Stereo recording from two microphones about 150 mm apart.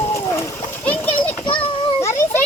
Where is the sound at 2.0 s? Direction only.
20° left (ahead or behind).